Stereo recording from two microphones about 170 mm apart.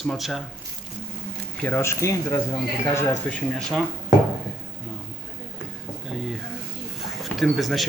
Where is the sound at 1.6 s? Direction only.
15° left (ahead or behind).